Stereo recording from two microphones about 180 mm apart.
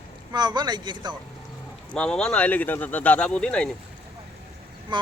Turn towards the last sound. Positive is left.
turn(degrees=-25)  # may be behind; listen again after turning